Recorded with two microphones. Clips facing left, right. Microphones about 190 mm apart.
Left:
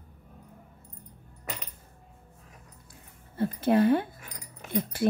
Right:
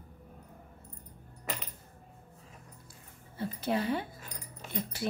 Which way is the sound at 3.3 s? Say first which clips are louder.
Left 8 dB; 55° left (ahead or behind).